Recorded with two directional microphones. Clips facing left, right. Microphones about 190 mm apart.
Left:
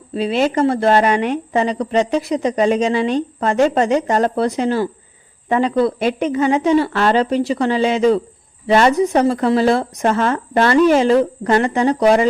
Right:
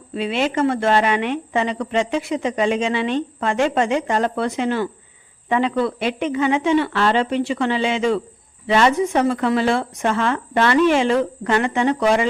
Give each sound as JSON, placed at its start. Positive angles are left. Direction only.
{"t": 0.1, "sound": "a woman's voice", "side_deg": 35}